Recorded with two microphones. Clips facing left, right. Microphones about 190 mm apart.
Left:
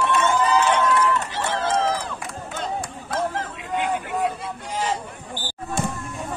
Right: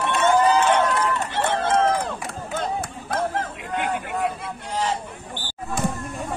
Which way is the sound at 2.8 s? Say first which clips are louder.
Even; 55° right (ahead or behind).